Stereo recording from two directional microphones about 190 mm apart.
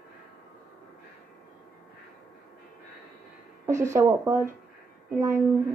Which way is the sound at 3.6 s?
15° right (ahead or behind).